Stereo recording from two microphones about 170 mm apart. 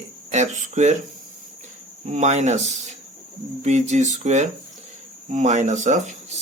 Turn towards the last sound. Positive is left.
turn(degrees=-45)  # may be behind; listen again after turning